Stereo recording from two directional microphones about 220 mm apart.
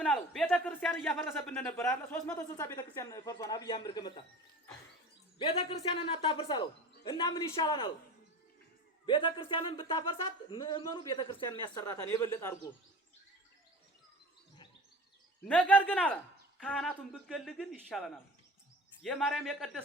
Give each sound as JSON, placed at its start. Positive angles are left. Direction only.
{"t": 0.0, "sound": "speech", "side_deg": 5}
{"t": 5.4, "sound": "a man's voice", "side_deg": 25}
{"t": 9.0, "sound": "a man's voice", "side_deg": 20}
{"t": 15.4, "sound": "speech", "side_deg": 5}